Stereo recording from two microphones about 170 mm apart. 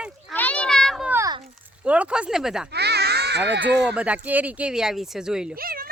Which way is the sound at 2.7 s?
75° right (ahead or behind).